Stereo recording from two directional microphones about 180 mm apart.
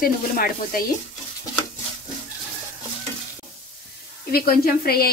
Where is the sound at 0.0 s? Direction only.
55° left (ahead or behind).